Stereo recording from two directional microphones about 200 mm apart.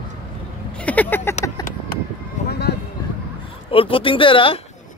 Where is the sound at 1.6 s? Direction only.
20° left (ahead or behind).